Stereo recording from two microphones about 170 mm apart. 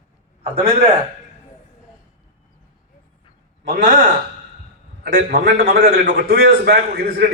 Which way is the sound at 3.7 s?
45° right (ahead or behind).